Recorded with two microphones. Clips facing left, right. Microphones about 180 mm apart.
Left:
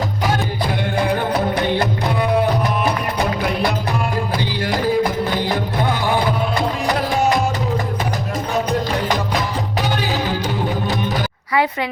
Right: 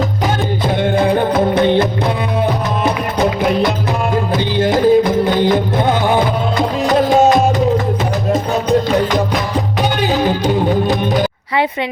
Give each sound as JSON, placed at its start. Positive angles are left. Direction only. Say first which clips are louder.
{"t": 0.8, "sound": "music", "louder": "right 7 dB", "side_deg": -20}
{"t": 10.0, "sound": "music", "louder": "right 6 dB", "side_deg": -20}